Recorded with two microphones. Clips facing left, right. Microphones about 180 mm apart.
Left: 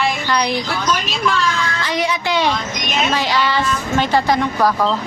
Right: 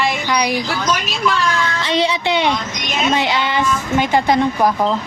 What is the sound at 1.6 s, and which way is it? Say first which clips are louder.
A woman's voice: right 2 dB; 25° right (ahead or behind).